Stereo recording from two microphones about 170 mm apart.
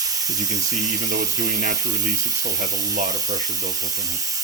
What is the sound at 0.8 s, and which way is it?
Speech, 20° right (ahead or behind).